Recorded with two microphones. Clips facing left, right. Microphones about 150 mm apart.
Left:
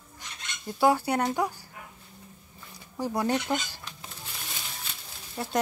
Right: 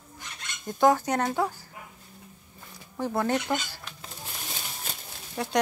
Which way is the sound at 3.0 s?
15° left (ahead or behind).